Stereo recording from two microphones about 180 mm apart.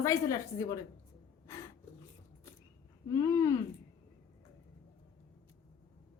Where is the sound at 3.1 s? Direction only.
15° left (ahead or behind).